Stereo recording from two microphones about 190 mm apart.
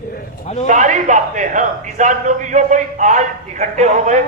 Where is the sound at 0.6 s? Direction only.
40° right (ahead or behind).